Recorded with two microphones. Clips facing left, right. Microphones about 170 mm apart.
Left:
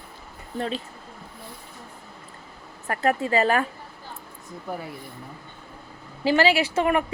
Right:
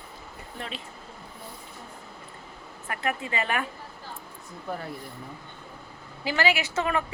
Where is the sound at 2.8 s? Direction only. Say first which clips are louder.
Left 7 dB; 40° left (ahead or behind).